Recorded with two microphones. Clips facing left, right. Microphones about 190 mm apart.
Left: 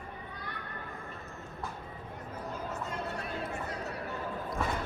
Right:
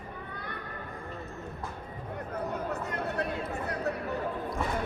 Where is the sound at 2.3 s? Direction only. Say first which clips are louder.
Right 5 dB; 65° right (ahead or behind).